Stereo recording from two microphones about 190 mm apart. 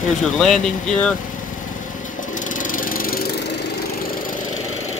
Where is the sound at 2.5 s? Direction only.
45° left (ahead or behind).